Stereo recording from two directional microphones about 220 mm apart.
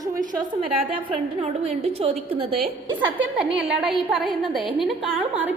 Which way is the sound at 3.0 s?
5° right (ahead or behind).